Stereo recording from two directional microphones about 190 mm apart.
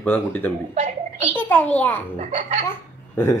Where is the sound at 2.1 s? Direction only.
35° right (ahead or behind).